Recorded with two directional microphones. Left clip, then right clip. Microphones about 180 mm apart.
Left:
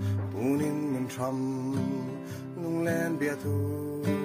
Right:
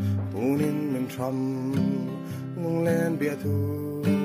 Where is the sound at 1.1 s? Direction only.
15° right (ahead or behind).